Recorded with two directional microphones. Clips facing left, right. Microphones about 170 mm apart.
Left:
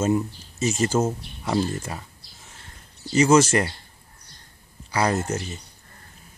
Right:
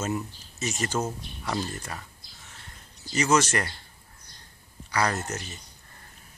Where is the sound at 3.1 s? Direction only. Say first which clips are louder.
Left 7 dB; 25° left (ahead or behind).